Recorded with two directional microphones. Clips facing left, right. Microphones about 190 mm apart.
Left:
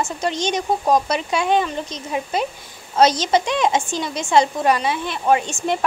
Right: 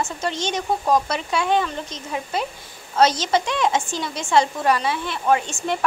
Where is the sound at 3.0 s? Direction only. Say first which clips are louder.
Left 2 dB; 15° left (ahead or behind).